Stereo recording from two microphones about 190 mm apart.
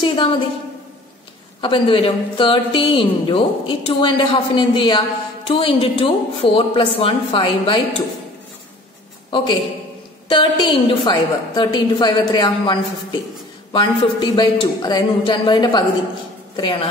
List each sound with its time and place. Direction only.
0.0 s a woman's voice: 25° left (ahead or behind)
1.6 s a woman's voice: 25° left (ahead or behind)
9.3 s a woman's voice: 25° left (ahead or behind)
13.7 s a woman's voice: 25° left (ahead or behind)